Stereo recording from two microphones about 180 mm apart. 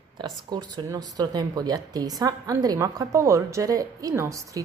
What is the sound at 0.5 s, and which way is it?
A woman's voice, 25° right (ahead or behind).